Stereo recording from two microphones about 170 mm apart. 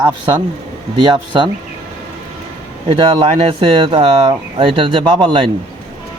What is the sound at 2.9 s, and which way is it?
Speech, 30° right (ahead or behind).